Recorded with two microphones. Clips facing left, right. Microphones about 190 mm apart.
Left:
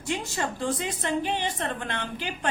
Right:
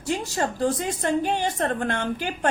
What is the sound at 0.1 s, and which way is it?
A woman's voice, 40° right (ahead or behind).